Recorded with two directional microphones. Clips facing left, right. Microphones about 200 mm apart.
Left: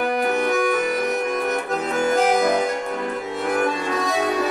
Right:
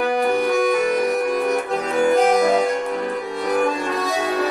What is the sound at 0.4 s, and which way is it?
Music, centre (ahead or behind).